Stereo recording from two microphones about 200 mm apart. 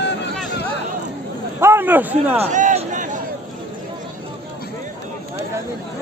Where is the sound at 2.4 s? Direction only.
40° right (ahead or behind).